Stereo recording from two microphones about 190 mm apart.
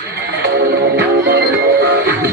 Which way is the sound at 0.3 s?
60° right (ahead or behind).